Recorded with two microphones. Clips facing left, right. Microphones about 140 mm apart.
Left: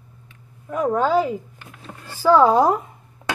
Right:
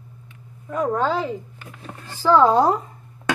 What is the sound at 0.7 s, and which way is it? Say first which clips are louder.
A woman's voice: left 2 dB; 5° left (ahead or behind).